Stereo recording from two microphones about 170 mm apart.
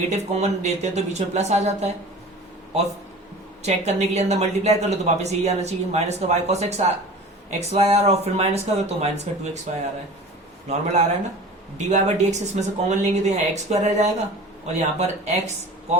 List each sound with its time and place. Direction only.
0.1 s a woman's voice: 40° right (ahead or behind)
3.6 s a woman's voice: 40° right (ahead or behind)